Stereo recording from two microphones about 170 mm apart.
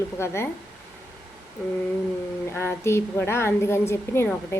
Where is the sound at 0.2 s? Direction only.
15° left (ahead or behind).